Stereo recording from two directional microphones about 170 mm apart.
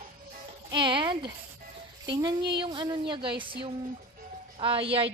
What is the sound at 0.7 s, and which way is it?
A woman's voice, 25° right (ahead or behind).